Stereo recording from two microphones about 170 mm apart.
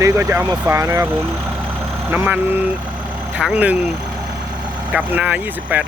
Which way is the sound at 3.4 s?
5° right (ahead or behind).